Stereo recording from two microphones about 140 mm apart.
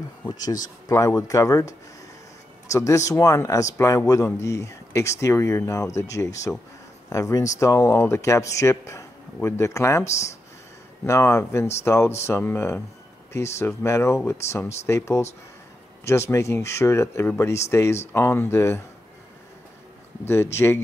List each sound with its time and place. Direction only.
0.8 s speech: 25° left (ahead or behind)
11.1 s speech: 20° left (ahead or behind)
20.5 s speech: 15° left (ahead or behind)